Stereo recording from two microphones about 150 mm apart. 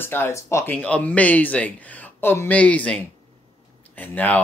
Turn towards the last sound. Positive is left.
turn(degrees=10)  # may be behind; listen again after turning